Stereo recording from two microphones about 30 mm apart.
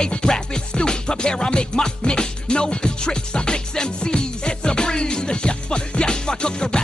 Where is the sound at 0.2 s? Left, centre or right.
Left.